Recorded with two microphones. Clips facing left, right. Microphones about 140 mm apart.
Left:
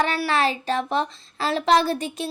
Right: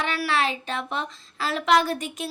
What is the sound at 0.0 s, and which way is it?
A child's voice, 35° left (ahead or behind).